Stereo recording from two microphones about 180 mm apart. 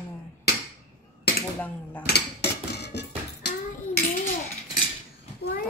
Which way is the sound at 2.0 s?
65° left (ahead or behind).